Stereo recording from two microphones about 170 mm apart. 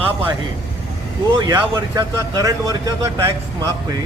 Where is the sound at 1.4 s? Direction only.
20° right (ahead or behind).